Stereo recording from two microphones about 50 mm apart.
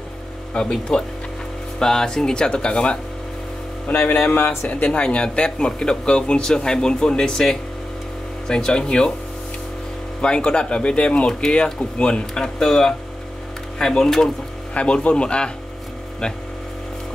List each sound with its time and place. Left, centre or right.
0.6 s speech: centre
4.3 s speech: left
4.6 s speech: left
10.2 s speech: centre
14.7 s speech: left